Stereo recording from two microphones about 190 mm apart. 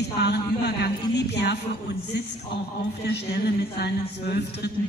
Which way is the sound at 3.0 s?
60° left (ahead or behind).